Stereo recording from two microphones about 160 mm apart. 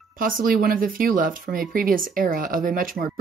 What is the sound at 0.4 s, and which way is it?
Speech, 65° right (ahead or behind).